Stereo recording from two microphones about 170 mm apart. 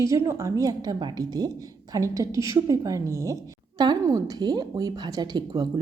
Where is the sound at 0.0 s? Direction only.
20° right (ahead or behind).